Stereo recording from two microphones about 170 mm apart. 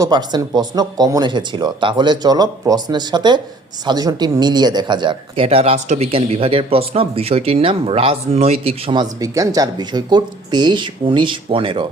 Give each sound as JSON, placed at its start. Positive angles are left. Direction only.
{"t": 0.0, "sound": "speech", "side_deg": -25}